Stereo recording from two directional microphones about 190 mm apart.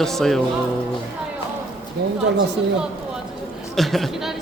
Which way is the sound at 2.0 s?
60° right (ahead or behind).